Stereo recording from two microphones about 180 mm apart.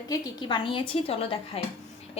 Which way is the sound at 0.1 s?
25° left (ahead or behind).